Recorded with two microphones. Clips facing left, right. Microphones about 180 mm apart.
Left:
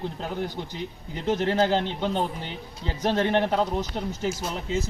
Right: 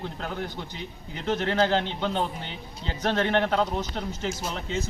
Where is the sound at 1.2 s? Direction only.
15° left (ahead or behind).